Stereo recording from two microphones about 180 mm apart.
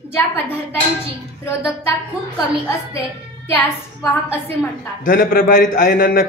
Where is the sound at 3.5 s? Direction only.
15° left (ahead or behind).